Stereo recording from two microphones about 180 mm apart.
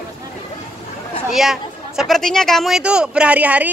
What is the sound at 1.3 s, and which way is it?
Speech, centre (ahead or behind).